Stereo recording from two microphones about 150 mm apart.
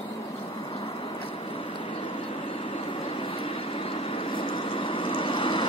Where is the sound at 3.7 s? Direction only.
40° left (ahead or behind).